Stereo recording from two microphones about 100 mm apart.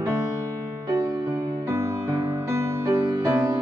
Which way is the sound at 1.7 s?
30° right (ahead or behind).